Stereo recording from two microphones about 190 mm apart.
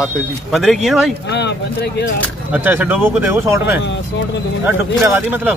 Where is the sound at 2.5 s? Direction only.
10° right (ahead or behind).